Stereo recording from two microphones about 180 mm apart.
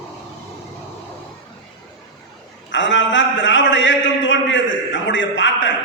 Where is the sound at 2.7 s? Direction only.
90° left.